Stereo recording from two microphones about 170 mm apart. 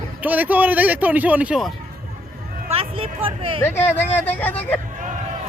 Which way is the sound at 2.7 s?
35° right (ahead or behind).